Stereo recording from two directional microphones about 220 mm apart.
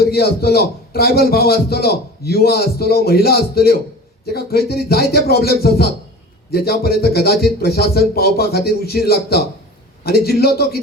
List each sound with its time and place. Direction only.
0.0 s a man's voice: 45° left (ahead or behind)